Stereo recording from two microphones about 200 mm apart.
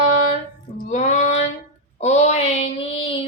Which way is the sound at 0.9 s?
35° left (ahead or behind).